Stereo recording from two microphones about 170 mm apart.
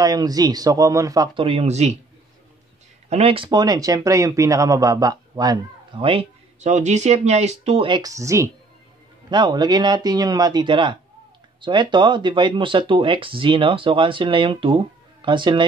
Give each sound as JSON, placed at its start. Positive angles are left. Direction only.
{"t": 0.0, "sound": "speech", "side_deg": -20}
{"t": 3.1, "sound": "speech", "side_deg": -35}
{"t": 3.4, "sound": "speech", "side_deg": -25}